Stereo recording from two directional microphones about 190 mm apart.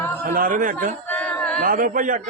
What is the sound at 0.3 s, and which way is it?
Speech, 45° right (ahead or behind).